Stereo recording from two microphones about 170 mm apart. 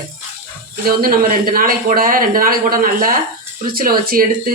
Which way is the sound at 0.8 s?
60° right (ahead or behind).